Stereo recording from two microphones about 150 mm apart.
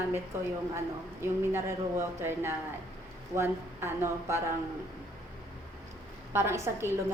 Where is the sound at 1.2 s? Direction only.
15° right (ahead or behind).